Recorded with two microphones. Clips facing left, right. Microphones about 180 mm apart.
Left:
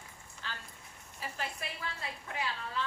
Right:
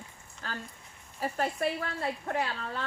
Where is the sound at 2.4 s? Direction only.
60° right (ahead or behind).